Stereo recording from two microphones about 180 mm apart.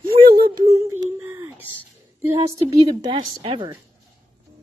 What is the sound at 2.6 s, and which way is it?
A woman's voice, 25° right (ahead or behind).